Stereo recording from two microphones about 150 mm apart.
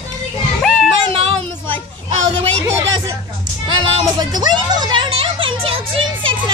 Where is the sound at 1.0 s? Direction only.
40° right (ahead or behind).